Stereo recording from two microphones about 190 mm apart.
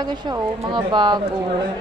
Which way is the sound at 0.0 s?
20° right (ahead or behind).